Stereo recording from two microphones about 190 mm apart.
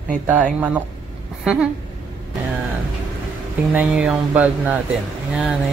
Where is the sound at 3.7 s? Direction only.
5° right (ahead or behind).